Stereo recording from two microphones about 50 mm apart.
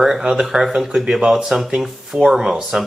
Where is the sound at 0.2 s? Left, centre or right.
Centre.